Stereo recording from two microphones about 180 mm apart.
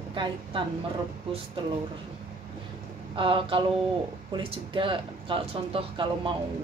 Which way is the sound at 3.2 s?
30° right (ahead or behind).